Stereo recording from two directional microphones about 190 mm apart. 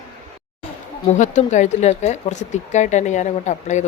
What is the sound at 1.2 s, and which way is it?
Speech, 40° left (ahead or behind).